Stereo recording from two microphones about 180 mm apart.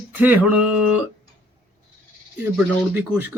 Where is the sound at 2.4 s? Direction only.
10° right (ahead or behind).